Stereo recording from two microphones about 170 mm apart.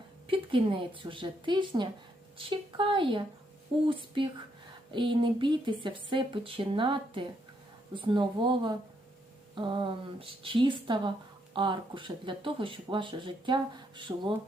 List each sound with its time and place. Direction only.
0.3 s speech: 30° right (ahead or behind)